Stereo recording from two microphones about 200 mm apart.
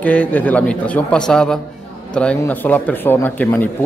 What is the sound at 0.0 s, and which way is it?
Speech, 5° left (ahead or behind).